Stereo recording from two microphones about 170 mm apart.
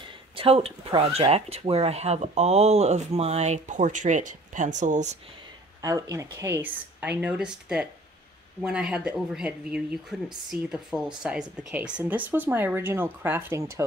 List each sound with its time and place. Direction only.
0.4 s speech: 35° right (ahead or behind)
5.8 s speech: 20° right (ahead or behind)